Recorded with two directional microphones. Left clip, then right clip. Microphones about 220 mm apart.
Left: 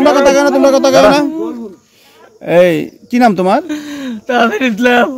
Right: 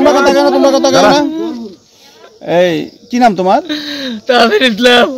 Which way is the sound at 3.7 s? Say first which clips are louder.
Right 3 dB; 10° left (ahead or behind).